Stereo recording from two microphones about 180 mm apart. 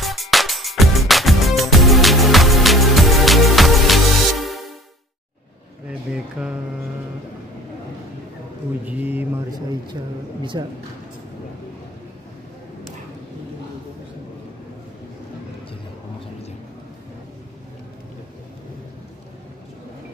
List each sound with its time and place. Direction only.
0.0 s music: centre (ahead or behind)
5.9 s a sound: 5° right (ahead or behind)
8.8 s speech: 10° right (ahead or behind)
10.5 s speech: 25° right (ahead or behind)